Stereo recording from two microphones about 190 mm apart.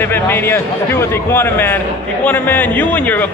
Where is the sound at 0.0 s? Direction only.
10° left (ahead or behind).